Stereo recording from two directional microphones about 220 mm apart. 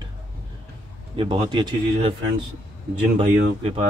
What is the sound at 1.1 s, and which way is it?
A man's voice, 20° right (ahead or behind).